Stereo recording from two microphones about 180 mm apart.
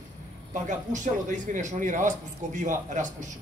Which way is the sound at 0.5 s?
45° right (ahead or behind).